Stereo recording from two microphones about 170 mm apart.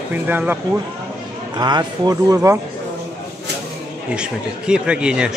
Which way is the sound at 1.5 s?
25° right (ahead or behind).